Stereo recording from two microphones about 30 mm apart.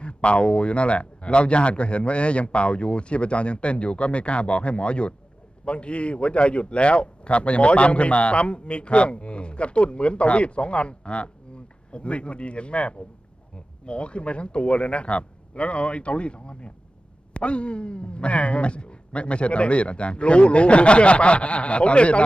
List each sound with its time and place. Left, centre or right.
0.0 s speech: left